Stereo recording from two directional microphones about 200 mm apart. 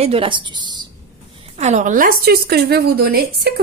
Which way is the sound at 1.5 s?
35° right (ahead or behind).